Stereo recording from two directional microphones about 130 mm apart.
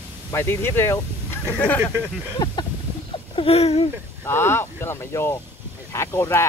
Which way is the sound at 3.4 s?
50° left (ahead or behind).